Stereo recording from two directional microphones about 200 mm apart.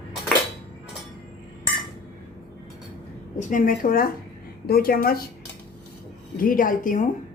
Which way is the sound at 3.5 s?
45° left (ahead or behind).